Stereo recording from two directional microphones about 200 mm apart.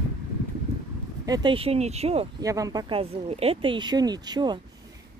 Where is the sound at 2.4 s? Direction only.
15° right (ahead or behind).